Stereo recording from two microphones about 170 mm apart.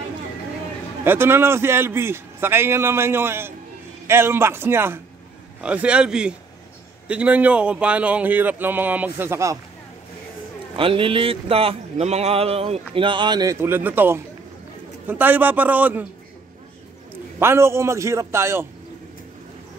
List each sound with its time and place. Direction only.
1.0 s a man's voice: 15° right (ahead or behind)
10.8 s a man's voice: 30° right (ahead or behind); by 16.1 s 10° right (ahead or behind)
17.4 s a man's voice: 15° right (ahead or behind)